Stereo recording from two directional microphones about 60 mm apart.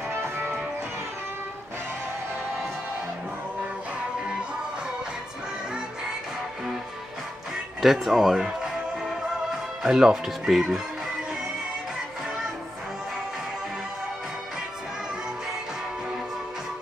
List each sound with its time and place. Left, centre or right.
0.2 s music: right
7.8 s speech: centre
9.8 s speech: centre